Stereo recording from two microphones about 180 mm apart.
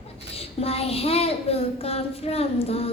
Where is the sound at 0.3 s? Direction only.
35° left (ahead or behind).